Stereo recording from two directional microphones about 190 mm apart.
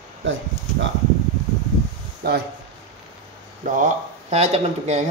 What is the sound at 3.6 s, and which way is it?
Speech, 40° right (ahead or behind).